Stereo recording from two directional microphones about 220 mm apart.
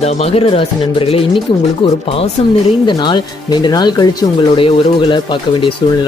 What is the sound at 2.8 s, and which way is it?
Speech, 20° left (ahead or behind).